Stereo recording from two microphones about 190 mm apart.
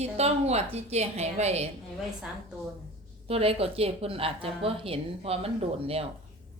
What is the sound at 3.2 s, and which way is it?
A woman's voice, 30° right (ahead or behind).